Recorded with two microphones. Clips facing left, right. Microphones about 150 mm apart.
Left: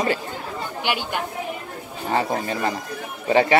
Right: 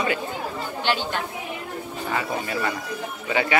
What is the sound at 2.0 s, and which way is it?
A man's voice, 35° left (ahead or behind).